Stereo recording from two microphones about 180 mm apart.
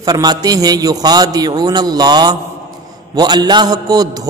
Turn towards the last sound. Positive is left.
turn(degrees=-20)  # may be behind; listen again after turning